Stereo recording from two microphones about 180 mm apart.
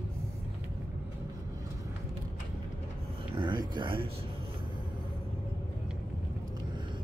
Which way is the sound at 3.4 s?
25° right (ahead or behind).